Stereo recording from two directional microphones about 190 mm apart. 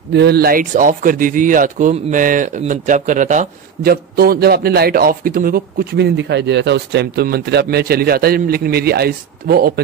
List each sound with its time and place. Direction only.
0.1 s speech: 60° right (ahead or behind)